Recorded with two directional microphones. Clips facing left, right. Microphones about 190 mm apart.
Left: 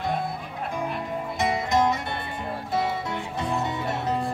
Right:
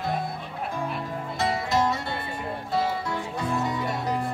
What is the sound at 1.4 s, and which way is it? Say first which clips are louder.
Music: left 2 dB; 20° left (ahead or behind).